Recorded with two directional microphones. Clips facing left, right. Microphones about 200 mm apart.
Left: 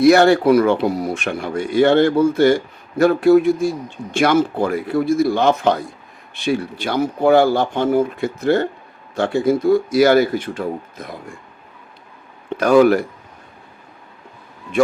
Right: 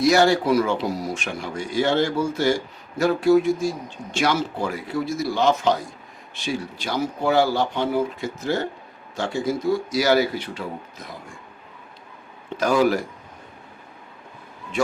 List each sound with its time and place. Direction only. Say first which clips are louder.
0.0 s speech: left 6 dB; 60° left (ahead or behind)
12.5 s speech: left 7 dB; 60° left (ahead or behind)